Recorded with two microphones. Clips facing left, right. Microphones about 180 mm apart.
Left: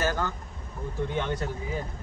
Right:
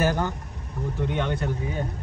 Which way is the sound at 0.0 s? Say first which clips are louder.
Right 4 dB; 15° right (ahead or behind).